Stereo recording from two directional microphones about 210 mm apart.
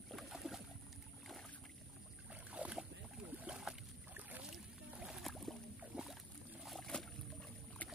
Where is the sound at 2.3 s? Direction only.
5° right (ahead or behind).